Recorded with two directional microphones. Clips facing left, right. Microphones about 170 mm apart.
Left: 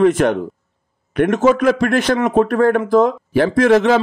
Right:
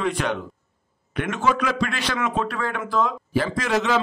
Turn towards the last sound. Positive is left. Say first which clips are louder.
# left 10 dB
turn(degrees=55)  # may be behind; listen again after turning